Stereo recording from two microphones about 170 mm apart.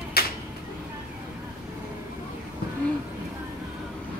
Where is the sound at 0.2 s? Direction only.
70° left (ahead or behind).